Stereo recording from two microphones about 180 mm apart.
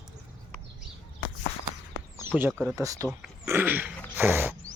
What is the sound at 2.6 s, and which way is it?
Speech, 15° right (ahead or behind).